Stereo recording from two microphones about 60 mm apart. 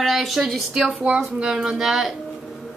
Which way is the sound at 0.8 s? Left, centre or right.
Centre.